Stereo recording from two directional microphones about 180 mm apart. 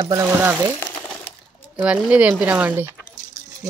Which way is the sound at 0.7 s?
10° left (ahead or behind).